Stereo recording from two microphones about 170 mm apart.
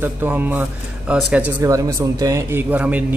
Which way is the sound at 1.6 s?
20° right (ahead or behind).